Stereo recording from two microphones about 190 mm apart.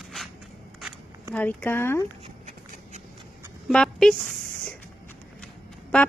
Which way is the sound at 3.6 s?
5° left (ahead or behind).